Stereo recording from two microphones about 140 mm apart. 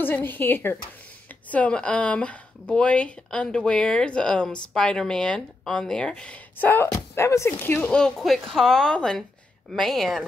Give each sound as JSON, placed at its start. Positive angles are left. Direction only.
{"t": 0.0, "sound": "speech", "side_deg": 15}